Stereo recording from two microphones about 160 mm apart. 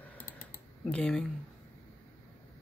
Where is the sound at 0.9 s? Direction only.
5° left (ahead or behind).